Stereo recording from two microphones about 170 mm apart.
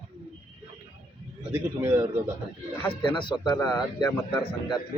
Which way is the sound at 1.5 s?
15° right (ahead or behind).